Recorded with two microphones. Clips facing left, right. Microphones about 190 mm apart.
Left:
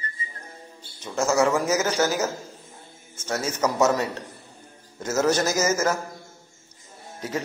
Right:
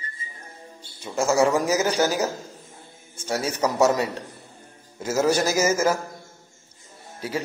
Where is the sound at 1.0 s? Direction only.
15° right (ahead or behind).